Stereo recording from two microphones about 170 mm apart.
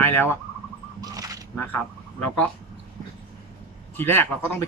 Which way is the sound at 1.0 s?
20° right (ahead or behind).